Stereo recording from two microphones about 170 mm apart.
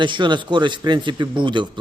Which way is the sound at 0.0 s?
30° right (ahead or behind).